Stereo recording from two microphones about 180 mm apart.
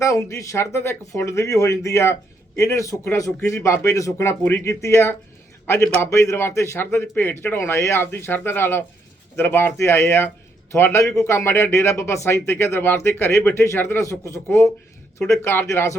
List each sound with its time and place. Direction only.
0.0 s speech: 15° left (ahead or behind)